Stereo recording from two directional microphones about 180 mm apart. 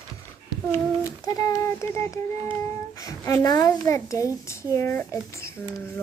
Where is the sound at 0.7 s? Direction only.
20° left (ahead or behind).